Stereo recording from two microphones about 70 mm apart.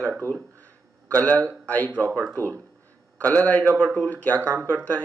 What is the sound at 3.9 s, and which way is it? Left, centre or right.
Speech, right.